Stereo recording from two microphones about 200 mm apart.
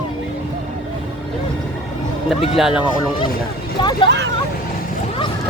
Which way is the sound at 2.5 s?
5° right (ahead or behind).